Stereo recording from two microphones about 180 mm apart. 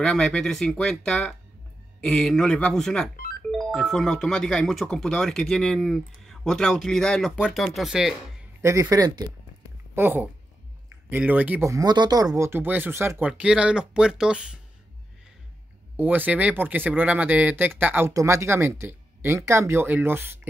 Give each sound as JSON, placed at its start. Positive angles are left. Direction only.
{"t": 0.0, "sound": "speech", "side_deg": 5}
{"t": 8.5, "sound": "speech", "side_deg": -15}
{"t": 16.0, "sound": "speech", "side_deg": -10}